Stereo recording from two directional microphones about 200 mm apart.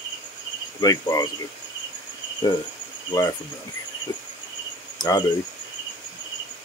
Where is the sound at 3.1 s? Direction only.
20° left (ahead or behind).